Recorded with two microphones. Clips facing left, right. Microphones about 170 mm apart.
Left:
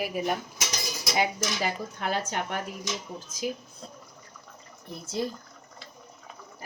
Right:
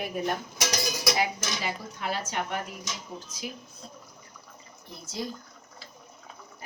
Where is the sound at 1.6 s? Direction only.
50° left (ahead or behind).